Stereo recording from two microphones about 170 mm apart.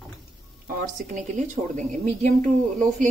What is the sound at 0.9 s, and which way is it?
Speech, 45° right (ahead or behind).